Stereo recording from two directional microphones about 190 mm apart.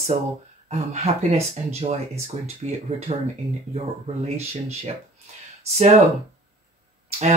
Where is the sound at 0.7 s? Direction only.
35° right (ahead or behind).